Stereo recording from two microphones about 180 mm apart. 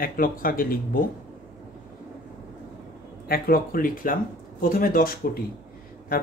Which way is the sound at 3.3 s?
55° left (ahead or behind).